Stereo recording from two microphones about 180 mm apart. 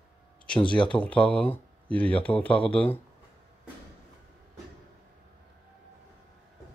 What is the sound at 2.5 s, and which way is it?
Speech, 30° left (ahead or behind).